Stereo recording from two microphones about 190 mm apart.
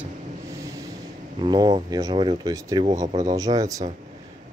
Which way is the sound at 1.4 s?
25° right (ahead or behind).